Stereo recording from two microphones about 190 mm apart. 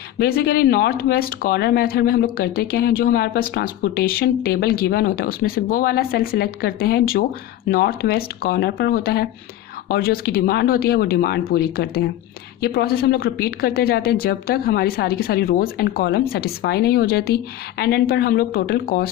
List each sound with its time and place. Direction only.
0.2 s a woman's voice: 55° left (ahead or behind)